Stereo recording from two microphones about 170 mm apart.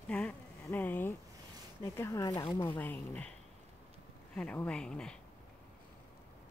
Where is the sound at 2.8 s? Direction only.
10° left (ahead or behind).